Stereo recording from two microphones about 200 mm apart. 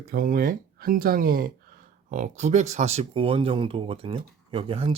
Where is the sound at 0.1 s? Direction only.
45° right (ahead or behind).